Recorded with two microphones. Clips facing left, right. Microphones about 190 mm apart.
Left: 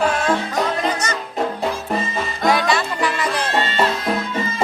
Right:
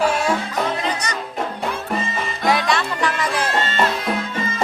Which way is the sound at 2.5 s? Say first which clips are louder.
Even; centre (ahead or behind).